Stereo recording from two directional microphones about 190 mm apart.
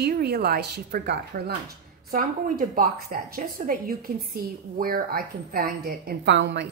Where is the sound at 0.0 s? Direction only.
55° right (ahead or behind).